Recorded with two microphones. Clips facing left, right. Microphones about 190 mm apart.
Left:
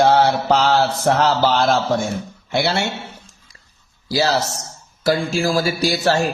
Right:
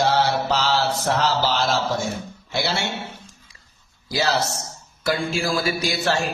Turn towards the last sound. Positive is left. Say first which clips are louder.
# left 5 dB
turn(degrees=40)  # may be behind; listen again after turning